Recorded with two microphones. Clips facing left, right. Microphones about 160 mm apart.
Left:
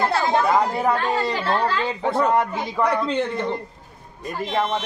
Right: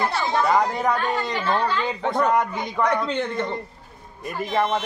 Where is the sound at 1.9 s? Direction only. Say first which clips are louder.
Left 1 dB; 5° left (ahead or behind).